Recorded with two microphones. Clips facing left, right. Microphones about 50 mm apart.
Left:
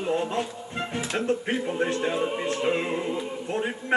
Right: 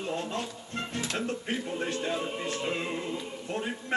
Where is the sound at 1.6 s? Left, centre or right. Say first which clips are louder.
Left 7 dB; left.